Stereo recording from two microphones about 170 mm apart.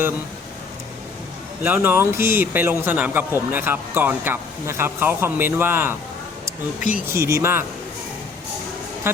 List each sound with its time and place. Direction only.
1.6 s a man's voice: 10° right (ahead or behind)
9.1 s speech: 15° right (ahead or behind)